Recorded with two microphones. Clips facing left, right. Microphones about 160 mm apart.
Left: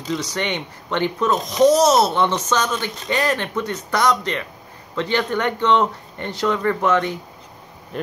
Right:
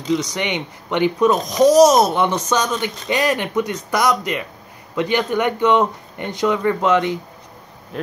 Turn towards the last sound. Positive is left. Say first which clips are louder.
# right 2 dB
turn(degrees=-15)  # may be behind; listen again after turning